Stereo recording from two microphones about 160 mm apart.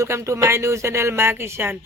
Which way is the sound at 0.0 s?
20° right (ahead or behind).